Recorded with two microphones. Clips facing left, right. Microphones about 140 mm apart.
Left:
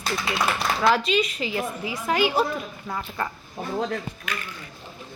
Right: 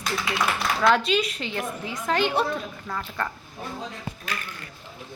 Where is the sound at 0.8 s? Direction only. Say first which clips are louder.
Even; centre (ahead or behind).